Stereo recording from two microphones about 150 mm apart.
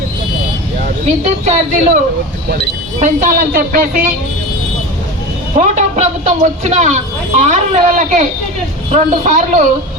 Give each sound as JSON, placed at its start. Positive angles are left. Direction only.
{"t": 1.0, "sound": "a woman's voice", "side_deg": -50}
{"t": 3.0, "sound": "speech", "side_deg": -60}
{"t": 5.5, "sound": "speech", "side_deg": -50}